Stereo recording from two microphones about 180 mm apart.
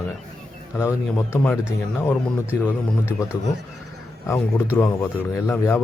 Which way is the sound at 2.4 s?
10° right (ahead or behind).